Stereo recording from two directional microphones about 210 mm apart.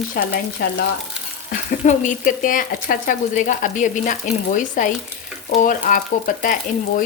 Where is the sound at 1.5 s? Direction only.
35° left (ahead or behind).